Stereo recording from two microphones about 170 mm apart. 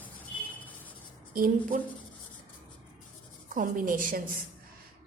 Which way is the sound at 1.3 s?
55° right (ahead or behind).